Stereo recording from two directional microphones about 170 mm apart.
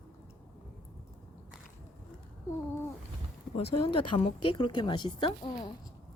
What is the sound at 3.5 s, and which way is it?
Speech, 35° left (ahead or behind).